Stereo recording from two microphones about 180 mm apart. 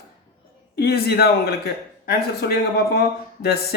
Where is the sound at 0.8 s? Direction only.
60° left (ahead or behind).